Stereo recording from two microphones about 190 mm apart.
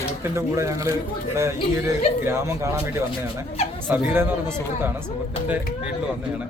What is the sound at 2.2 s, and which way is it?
Speech, 15° right (ahead or behind).